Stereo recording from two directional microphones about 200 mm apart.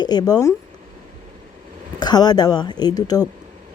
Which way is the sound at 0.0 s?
20° left (ahead or behind).